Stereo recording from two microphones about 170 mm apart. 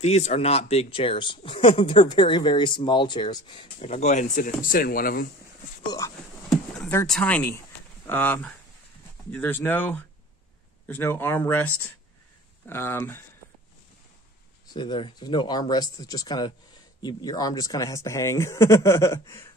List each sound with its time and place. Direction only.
0.0 s speech: 40° left (ahead or behind); by 5.3 s 55° left (ahead or behind)
5.9 s speech: 20° left (ahead or behind)
7.1 s speech: 10° left (ahead or behind)
14.7 s speech: 25° left (ahead or behind)